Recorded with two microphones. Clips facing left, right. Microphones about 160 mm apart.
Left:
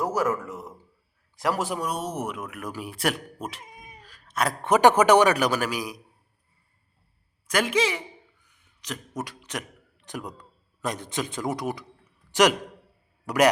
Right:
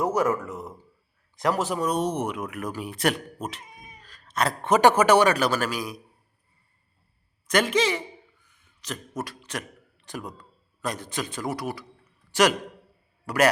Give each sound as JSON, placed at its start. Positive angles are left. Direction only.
{"t": 0.0, "sound": "a man's voice", "side_deg": 0}
{"t": 7.4, "sound": "a man's voice", "side_deg": 10}